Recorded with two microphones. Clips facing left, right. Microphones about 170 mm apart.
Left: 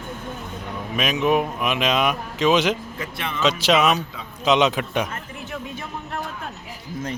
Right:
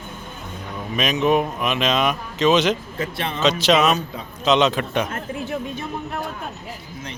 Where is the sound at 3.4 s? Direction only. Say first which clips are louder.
Right 1 dB; 10° left (ahead or behind).